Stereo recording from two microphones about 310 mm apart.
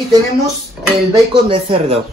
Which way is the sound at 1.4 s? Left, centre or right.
Centre.